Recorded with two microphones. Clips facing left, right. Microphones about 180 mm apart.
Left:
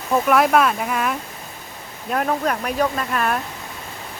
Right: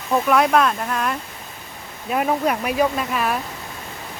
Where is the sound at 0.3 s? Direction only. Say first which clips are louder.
Left 1 dB; 5° left (ahead or behind).